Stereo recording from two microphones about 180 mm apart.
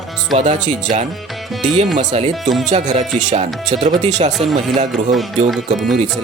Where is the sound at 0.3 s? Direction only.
40° right (ahead or behind).